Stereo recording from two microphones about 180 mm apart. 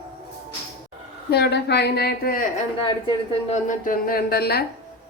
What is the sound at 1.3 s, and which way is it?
Speech, 65° left (ahead or behind).